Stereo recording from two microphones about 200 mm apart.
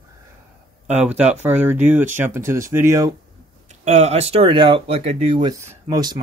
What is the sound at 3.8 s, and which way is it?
Speech, 35° right (ahead or behind).